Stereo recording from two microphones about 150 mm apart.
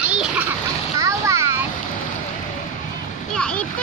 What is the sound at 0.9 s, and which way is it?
Splash, 20° right (ahead or behind).